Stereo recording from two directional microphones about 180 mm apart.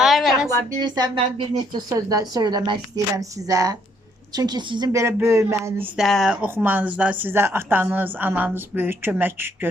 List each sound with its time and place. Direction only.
0.0 s a sound: centre (ahead or behind)
0.4 s a woman's voice: 25° right (ahead or behind)
6.0 s speech: centre (ahead or behind)